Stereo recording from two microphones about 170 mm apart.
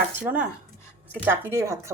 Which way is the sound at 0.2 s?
10° right (ahead or behind).